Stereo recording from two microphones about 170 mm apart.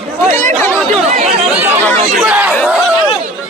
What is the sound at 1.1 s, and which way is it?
Chatter, 45° right (ahead or behind).